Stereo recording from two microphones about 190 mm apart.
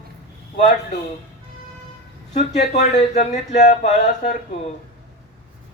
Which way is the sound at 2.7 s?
35° left (ahead or behind).